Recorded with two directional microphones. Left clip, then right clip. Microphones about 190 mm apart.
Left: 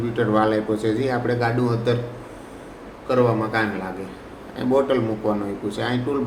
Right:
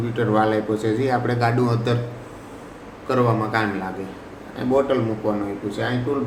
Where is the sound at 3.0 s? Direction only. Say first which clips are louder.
Left 1 dB; 15° right (ahead or behind).